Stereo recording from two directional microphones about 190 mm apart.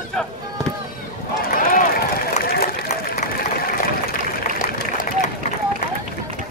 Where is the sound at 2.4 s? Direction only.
55° left (ahead or behind).